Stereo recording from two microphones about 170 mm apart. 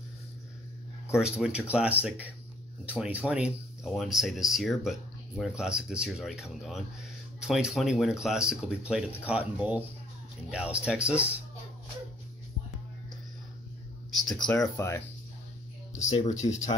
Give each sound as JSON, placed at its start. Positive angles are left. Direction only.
{"t": 1.2, "sound": "speech", "side_deg": -5}
{"t": 14.1, "sound": "a sound", "side_deg": 0}
{"t": 14.5, "sound": "speech", "side_deg": 15}
{"t": 16.1, "sound": "speech", "side_deg": 40}